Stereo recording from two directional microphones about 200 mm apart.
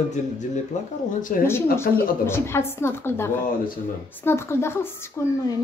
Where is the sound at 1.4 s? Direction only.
10° left (ahead or behind).